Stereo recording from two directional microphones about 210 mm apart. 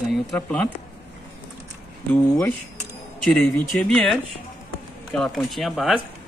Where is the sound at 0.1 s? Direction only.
5° left (ahead or behind).